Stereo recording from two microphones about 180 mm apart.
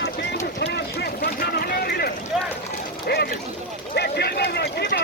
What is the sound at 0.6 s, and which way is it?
Vehicle, 65° left (ahead or behind).